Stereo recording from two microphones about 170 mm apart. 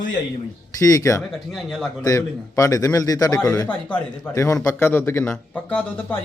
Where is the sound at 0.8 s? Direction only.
20° left (ahead or behind).